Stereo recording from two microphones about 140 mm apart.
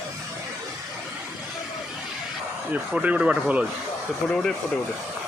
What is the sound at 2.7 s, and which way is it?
Speech, 10° right (ahead or behind).